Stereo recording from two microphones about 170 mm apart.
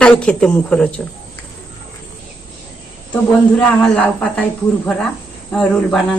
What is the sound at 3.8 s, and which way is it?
A woman's voice, 5° left (ahead or behind).